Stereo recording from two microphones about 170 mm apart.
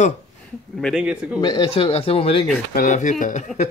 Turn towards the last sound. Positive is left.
turn(degrees=45)  # may be behind; listen again after turning